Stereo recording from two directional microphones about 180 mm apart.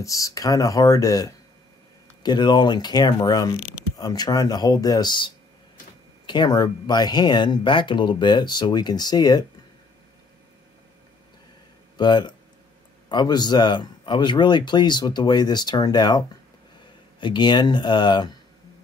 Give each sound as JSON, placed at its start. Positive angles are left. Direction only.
{"t": 0.0, "sound": "speech", "side_deg": 20}
{"t": 3.5, "sound": "speech", "side_deg": -5}
{"t": 4.0, "sound": "speech", "side_deg": 20}
{"t": 12.0, "sound": "speech", "side_deg": 25}